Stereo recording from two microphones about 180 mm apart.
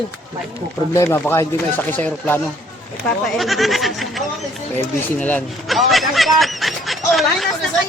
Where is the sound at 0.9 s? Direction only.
15° left (ahead or behind).